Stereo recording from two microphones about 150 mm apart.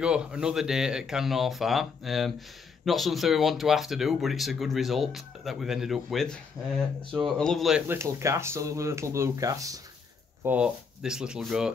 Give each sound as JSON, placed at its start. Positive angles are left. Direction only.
{"t": 0.0, "sound": "speech", "side_deg": -5}
{"t": 7.9, "sound": "speech", "side_deg": -20}
{"t": 10.4, "sound": "speech", "side_deg": -10}